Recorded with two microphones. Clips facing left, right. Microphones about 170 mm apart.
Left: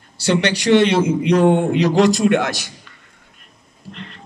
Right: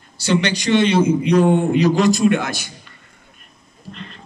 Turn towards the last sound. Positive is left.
turn(degrees=80)